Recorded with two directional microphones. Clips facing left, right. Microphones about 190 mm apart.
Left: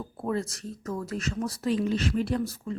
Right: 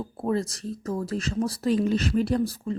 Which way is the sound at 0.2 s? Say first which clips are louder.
Right 3 dB; 30° right (ahead or behind).